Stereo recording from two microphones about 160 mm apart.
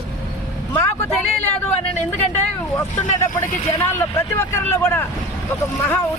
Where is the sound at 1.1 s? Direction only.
10° left (ahead or behind).